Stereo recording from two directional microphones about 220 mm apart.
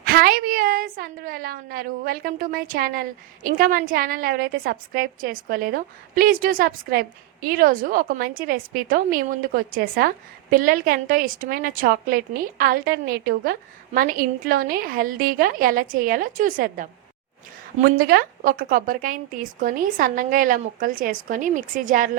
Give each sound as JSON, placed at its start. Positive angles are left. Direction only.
{"t": 0.0, "sound": "a woman's voice", "side_deg": -40}